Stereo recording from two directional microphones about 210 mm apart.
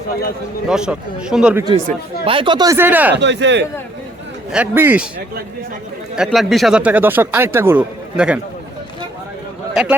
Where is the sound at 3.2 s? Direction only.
55° right (ahead or behind).